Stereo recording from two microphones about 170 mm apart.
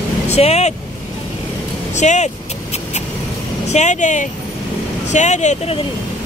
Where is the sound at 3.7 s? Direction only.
45° left (ahead or behind).